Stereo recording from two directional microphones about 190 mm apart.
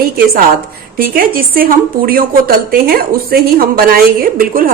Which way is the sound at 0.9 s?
50° right (ahead or behind).